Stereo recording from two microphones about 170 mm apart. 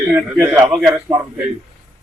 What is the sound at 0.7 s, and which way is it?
Speech, centre (ahead or behind).